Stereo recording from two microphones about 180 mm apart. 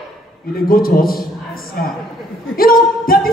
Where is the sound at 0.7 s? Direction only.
55° left (ahead or behind).